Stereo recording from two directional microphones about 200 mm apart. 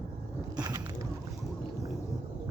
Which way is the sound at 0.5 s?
20° right (ahead or behind).